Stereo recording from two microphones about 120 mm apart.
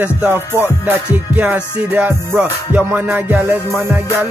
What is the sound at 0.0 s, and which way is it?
Music, 15° right (ahead or behind).